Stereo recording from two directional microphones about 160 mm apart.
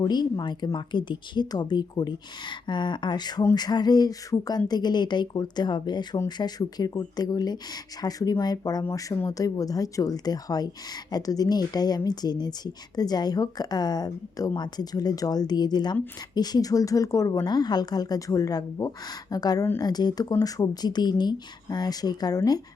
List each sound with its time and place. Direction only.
0.0 s speech: 25° left (ahead or behind)